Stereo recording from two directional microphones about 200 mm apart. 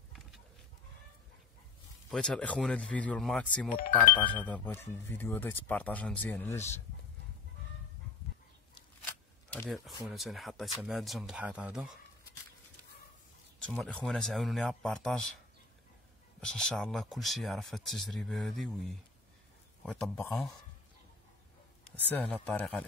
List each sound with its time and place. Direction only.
2.0 s speech: 5° left (ahead or behind)
9.5 s speech: 10° left (ahead or behind)
13.6 s speech: 5° left (ahead or behind)
16.3 s speech: 5° left (ahead or behind)
21.9 s speech: 10° left (ahead or behind)